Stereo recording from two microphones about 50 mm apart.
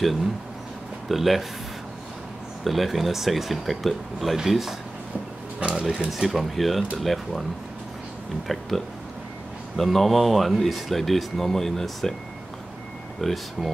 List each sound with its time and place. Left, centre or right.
1.0 s speech: centre
2.6 s speech: centre
5.6 s speech: right
6.1 s speech: centre
8.5 s speech: centre
13.2 s speech: centre